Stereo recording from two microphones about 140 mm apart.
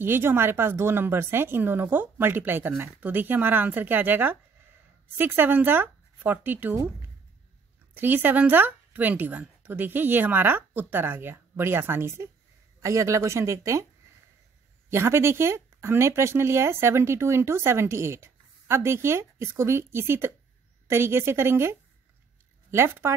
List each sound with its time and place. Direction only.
0.0 s speech: 15° right (ahead or behind)
7.9 s speech: 15° right (ahead or behind)
14.9 s speech: 20° right (ahead or behind)